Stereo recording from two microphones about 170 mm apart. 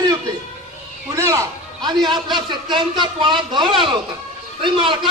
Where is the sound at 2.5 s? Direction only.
25° right (ahead or behind).